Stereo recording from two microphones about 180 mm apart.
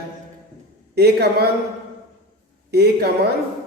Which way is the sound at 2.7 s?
65° right (ahead or behind).